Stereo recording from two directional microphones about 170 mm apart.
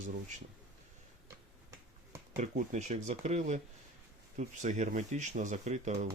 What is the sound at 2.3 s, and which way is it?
Speech, 45° right (ahead or behind).